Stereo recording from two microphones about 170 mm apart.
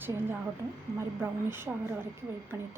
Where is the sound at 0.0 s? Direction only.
15° right (ahead or behind).